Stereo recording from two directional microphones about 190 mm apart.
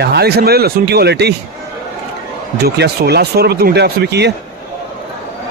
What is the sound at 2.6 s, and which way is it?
Speech, 55° right (ahead or behind).